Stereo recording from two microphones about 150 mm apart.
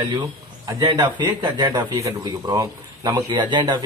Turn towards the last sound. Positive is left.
turn(degrees=-30)  # may be behind; listen again after turning